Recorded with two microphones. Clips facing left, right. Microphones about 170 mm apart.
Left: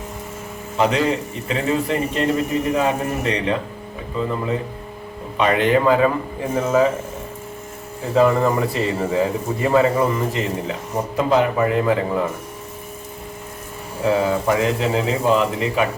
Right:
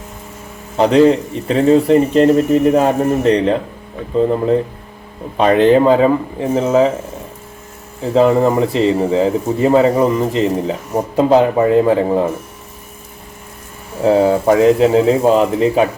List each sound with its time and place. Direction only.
0.8 s speech: 35° right (ahead or behind)
8.1 s speech: 25° right (ahead or behind)
14.0 s speech: 35° right (ahead or behind)